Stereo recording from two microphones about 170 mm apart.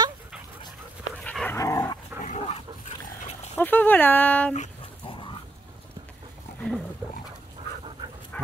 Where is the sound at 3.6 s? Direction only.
10° left (ahead or behind).